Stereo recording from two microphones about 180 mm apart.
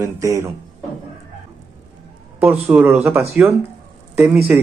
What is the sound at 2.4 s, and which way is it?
Speech, 5° right (ahead or behind).